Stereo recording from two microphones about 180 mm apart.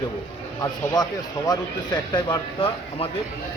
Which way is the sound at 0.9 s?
20° left (ahead or behind).